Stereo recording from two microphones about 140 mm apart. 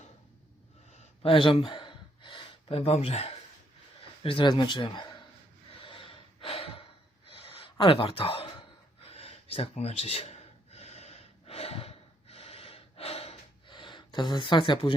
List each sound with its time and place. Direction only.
1.2 s gasp: 40° left (ahead or behind)
4.2 s speech: 40° left (ahead or behind)
5.8 s gasp: 40° left (ahead or behind)